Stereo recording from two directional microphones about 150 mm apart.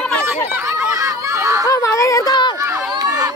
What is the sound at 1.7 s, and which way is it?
Speech, 20° left (ahead or behind).